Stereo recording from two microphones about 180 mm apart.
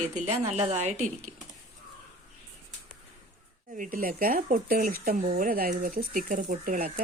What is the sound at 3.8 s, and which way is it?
Speech, 50° right (ahead or behind).